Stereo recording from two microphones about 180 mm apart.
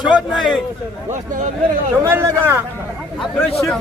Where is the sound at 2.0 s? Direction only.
15° right (ahead or behind).